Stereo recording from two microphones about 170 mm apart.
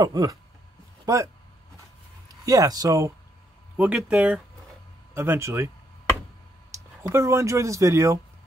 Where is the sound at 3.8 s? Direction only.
5° right (ahead or behind).